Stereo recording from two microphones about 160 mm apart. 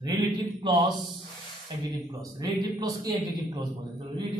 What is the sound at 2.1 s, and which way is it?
A man's voice, 25° right (ahead or behind).